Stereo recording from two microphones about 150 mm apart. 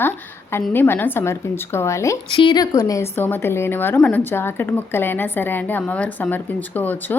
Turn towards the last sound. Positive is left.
turn(degrees=10)  # may be behind; listen again after turning